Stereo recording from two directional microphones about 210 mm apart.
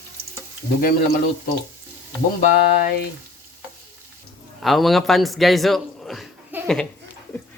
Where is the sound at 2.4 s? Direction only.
40° left (ahead or behind).